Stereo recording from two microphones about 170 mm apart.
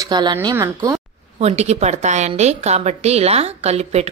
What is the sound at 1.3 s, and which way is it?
A woman's voice, 40° right (ahead or behind).